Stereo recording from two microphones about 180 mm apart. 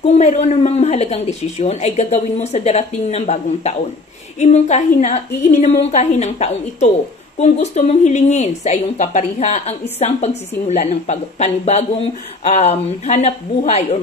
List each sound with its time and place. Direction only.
0.0 s speech: 40° left (ahead or behind)